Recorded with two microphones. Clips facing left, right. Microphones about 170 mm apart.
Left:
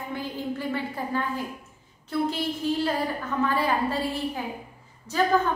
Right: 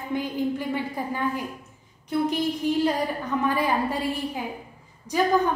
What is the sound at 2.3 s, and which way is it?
A woman's voice, 15° right (ahead or behind).